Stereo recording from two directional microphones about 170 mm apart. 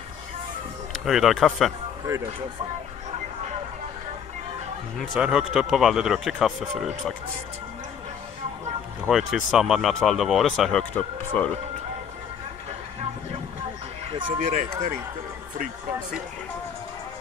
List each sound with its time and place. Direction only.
1.0 s speech: centre (ahead or behind)
5.1 s speech: 5° right (ahead or behind)
9.1 s speech: centre (ahead or behind)
14.4 s speech: 45° right (ahead or behind)